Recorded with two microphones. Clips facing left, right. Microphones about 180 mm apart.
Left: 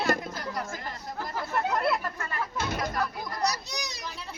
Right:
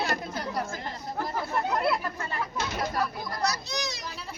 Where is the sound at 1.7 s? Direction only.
Centre (ahead or behind).